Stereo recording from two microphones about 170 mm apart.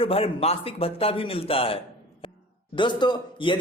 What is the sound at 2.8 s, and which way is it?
Speech, 25° left (ahead or behind).